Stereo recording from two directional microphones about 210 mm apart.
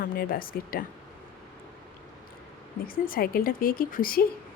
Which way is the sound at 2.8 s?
45° left (ahead or behind).